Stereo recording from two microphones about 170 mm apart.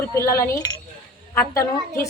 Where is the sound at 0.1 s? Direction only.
15° left (ahead or behind).